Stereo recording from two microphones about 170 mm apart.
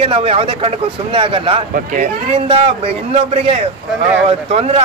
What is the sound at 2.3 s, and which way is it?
A man's voice, 30° right (ahead or behind).